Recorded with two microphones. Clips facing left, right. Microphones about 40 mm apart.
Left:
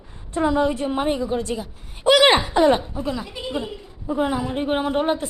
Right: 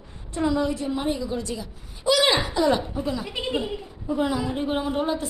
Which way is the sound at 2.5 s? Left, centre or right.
Left.